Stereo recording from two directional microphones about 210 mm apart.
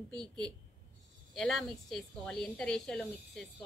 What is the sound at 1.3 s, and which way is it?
A woman's voice, centre (ahead or behind).